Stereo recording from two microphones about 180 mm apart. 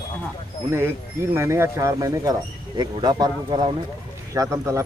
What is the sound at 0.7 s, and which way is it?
Speech, 15° right (ahead or behind).